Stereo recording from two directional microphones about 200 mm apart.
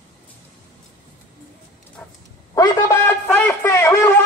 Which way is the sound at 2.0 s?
5° left (ahead or behind).